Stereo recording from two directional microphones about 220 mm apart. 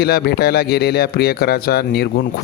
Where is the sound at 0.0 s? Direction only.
45° left (ahead or behind).